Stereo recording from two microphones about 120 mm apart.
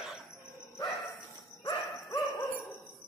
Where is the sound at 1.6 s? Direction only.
30° left (ahead or behind).